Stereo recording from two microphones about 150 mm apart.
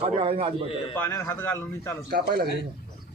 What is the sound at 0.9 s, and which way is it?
A man's voice, 15° left (ahead or behind).